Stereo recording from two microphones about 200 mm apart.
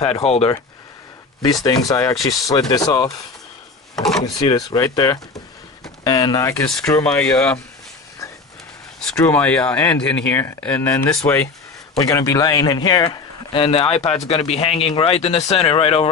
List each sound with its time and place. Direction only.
0.0 s speech: 30° left (ahead or behind)
1.5 s speech: 20° left (ahead or behind)
3.9 s speech: centre (ahead or behind)
4.2 s speech: 20° left (ahead or behind)
6.7 s speech: 5° left (ahead or behind)
9.1 s speech: 10° left (ahead or behind); by 16.1 s 30° left (ahead or behind)